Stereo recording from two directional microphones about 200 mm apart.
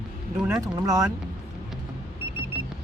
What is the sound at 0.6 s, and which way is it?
Speech, 20° right (ahead or behind).